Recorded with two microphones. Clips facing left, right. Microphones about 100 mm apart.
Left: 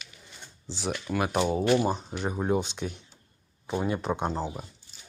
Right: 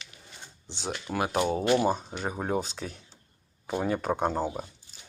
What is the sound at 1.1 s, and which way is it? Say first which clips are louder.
Speech: even; 35° right (ahead or behind).